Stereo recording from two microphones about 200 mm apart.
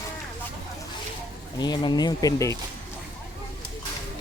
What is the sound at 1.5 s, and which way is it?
Speech, 20° left (ahead or behind).